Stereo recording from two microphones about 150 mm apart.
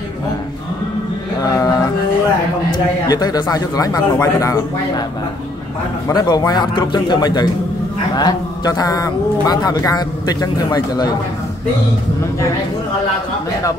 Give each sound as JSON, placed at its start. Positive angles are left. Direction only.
{"t": 1.4, "sound": "a sound", "side_deg": 25}
{"t": 2.7, "sound": "a man's voice", "side_deg": 25}
{"t": 6.0, "sound": "a man's voice", "side_deg": 25}